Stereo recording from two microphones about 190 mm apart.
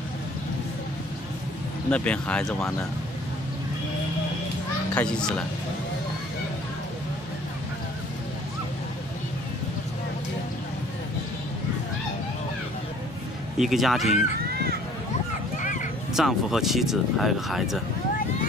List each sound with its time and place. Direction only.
1.9 s speech: 5° left (ahead or behind)
4.9 s speech: 5° left (ahead or behind)
13.6 s speech: centre (ahead or behind)
15.6 s a sound: 40° left (ahead or behind)
16.2 s speech: centre (ahead or behind)